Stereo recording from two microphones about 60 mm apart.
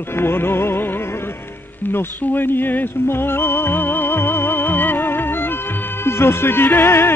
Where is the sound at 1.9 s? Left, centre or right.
Left.